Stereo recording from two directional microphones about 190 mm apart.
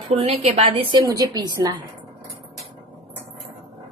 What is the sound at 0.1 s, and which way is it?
A woman's voice, 30° right (ahead or behind).